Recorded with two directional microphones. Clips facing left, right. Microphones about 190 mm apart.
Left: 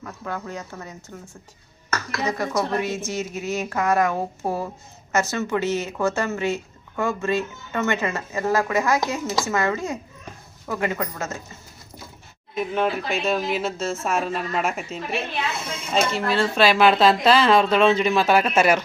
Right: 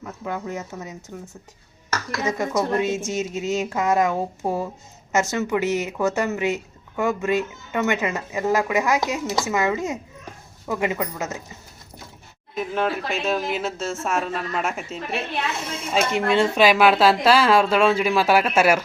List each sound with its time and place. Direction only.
0.0 s a woman's voice: 15° right (ahead or behind)
12.5 s speech: centre (ahead or behind)
16.1 s speech: 20° right (ahead or behind)